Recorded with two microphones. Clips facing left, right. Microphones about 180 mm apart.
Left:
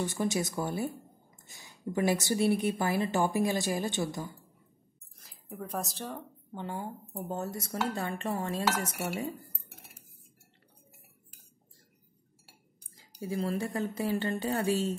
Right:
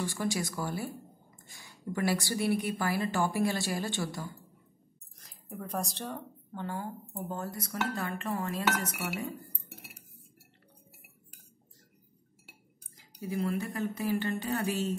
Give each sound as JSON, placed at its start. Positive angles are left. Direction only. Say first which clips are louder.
{"t": 0.0, "sound": "a woman's voice", "louder": "left 2 dB", "side_deg": 20}
{"t": 5.2, "sound": "speech", "louder": "even", "side_deg": 5}
{"t": 6.5, "sound": "a woman's voice", "louder": "even", "side_deg": 15}
{"t": 13.2, "sound": "a woman's voice", "louder": "even", "side_deg": 30}